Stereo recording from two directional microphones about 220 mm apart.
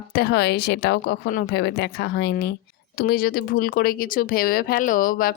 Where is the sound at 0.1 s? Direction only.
45° left (ahead or behind).